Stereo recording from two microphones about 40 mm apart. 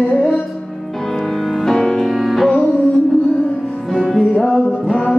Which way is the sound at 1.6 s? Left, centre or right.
Centre.